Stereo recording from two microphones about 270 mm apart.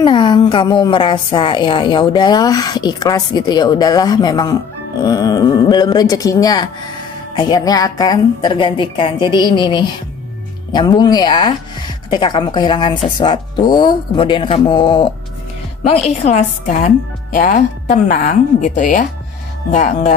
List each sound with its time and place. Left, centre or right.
0.0 s a woman's voice: centre